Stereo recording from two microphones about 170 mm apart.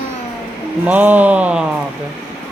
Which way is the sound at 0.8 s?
10° right (ahead or behind).